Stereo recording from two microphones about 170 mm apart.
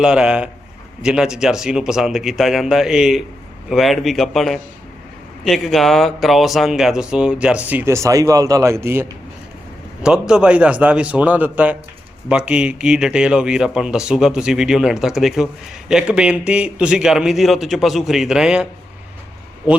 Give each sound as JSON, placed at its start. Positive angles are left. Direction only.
{"t": 0.0, "sound": "a man's voice", "side_deg": -5}